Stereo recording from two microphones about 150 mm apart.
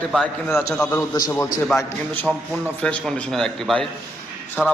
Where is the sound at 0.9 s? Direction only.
20° left (ahead or behind).